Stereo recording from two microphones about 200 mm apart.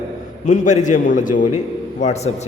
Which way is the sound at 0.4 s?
35° left (ahead or behind).